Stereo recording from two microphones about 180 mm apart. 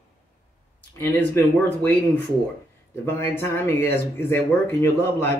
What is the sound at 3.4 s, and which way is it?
A man's voice, 15° left (ahead or behind).